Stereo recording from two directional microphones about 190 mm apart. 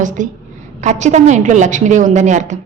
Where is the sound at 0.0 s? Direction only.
40° right (ahead or behind).